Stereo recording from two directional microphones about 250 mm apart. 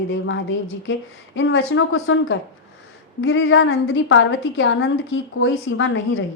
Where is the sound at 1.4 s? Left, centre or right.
Left.